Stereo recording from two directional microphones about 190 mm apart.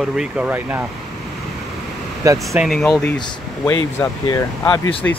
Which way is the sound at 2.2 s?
15° right (ahead or behind).